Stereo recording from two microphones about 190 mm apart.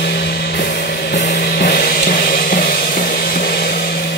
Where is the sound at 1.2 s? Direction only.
45° left (ahead or behind).